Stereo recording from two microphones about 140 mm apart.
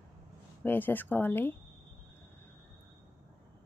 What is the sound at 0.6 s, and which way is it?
Speech, 15° left (ahead or behind).